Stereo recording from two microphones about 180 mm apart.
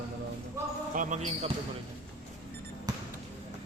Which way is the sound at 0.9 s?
40° right (ahead or behind).